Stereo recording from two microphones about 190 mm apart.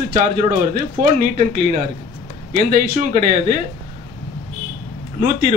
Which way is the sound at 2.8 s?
50° right (ahead or behind).